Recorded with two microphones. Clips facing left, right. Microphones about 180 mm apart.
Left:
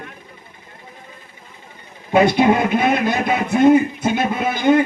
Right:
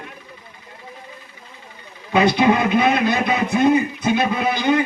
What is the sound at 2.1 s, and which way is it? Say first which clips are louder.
A man's voice: left 2 dB; 50° left (ahead or behind).